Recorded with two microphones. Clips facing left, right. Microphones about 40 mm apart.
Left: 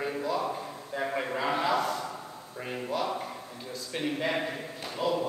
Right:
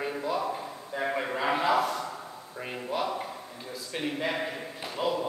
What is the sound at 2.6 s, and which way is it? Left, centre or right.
A man's voice, centre.